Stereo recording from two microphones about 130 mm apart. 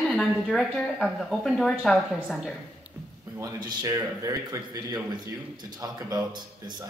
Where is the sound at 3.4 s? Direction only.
30° right (ahead or behind).